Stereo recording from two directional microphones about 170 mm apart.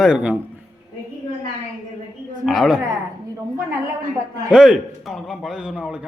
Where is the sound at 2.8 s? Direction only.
20° right (ahead or behind).